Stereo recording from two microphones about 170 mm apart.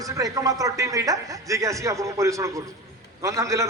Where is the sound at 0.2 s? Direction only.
20° right (ahead or behind).